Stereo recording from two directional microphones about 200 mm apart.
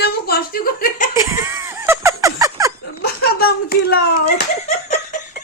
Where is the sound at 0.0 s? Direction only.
50° left (ahead or behind).